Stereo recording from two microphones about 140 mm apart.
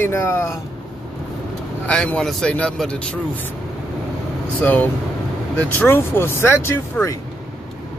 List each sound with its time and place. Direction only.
0.0 s speech: 20° left (ahead or behind)
1.9 s speech: 5° left (ahead or behind)
4.6 s speech: 10° left (ahead or behind)